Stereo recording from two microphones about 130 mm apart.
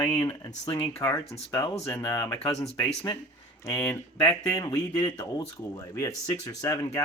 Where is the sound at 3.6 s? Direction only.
25° left (ahead or behind).